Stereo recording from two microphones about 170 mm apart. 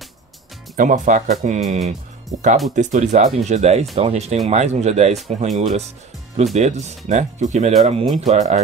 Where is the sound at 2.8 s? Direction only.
45° right (ahead or behind).